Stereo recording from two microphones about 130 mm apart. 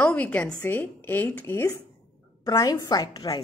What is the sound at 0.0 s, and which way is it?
A woman's voice, 10° left (ahead or behind).